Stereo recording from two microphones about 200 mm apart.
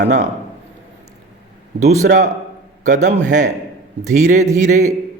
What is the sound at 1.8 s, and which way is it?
Speech, 35° right (ahead or behind).